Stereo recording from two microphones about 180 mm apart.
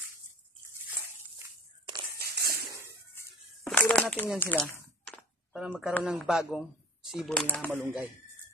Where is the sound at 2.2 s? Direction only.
60° right (ahead or behind).